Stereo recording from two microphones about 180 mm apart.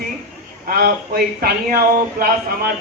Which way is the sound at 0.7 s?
60° right (ahead or behind).